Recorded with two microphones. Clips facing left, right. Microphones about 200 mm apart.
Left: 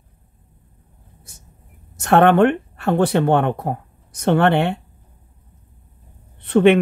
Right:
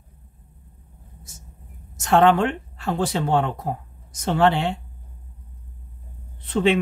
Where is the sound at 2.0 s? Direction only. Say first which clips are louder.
Left 4 dB; 60° left (ahead or behind).